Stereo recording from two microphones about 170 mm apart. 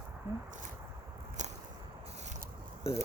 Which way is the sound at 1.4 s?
45° right (ahead or behind).